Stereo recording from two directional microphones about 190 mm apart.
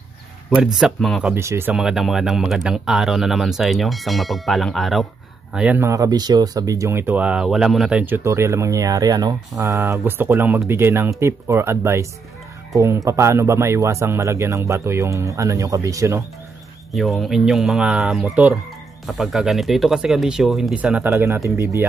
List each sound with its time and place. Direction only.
0.7 s speech: centre (ahead or behind)
1.3 s speech: 15° right (ahead or behind)
16.9 s speech: centre (ahead or behind)